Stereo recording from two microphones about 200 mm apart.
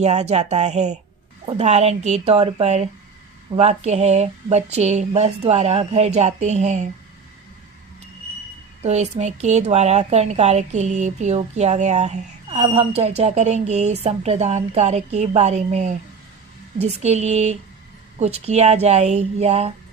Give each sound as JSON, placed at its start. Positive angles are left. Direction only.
{"t": 0.0, "sound": "a woman's voice", "side_deg": -35}
{"t": 8.8, "sound": "a woman's voice", "side_deg": -35}